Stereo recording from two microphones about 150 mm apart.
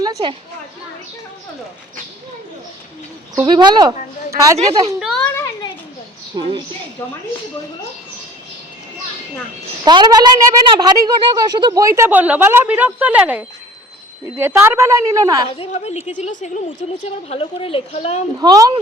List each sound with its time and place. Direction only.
0.0 s a woman's voice: 25° right (ahead or behind)
3.4 s a woman's voice: 30° right (ahead or behind)
4.9 s a sound: centre (ahead or behind)
5.2 s a sound: 15° left (ahead or behind)
6.3 s a woman's voice: 30° right (ahead or behind)
9.8 s a woman's voice: 30° right (ahead or behind)
15.4 s a woman's voice: 40° left (ahead or behind)
18.3 s a woman's voice: 25° right (ahead or behind)